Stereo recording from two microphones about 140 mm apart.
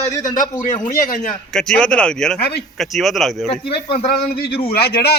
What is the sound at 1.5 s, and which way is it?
A man's voice, 5° left (ahead or behind).